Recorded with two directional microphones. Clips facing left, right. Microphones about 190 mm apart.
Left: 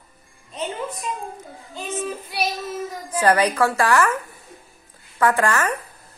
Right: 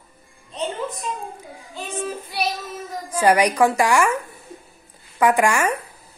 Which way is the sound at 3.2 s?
10° right (ahead or behind).